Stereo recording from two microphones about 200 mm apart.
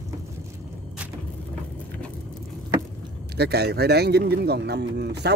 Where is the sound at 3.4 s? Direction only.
55° right (ahead or behind).